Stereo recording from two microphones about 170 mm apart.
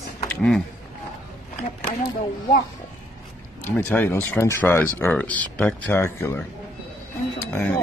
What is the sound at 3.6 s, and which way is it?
Speech, 10° left (ahead or behind).